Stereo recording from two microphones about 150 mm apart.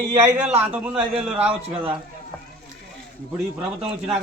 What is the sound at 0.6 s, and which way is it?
Speech, 10° right (ahead or behind).